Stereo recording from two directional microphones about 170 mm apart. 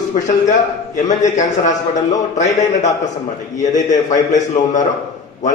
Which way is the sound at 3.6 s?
45° left (ahead or behind).